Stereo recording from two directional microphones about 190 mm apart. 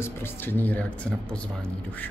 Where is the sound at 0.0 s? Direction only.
10° left (ahead or behind).